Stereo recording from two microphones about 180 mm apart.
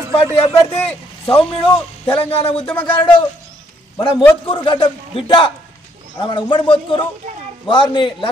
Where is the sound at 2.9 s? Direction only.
30° left (ahead or behind).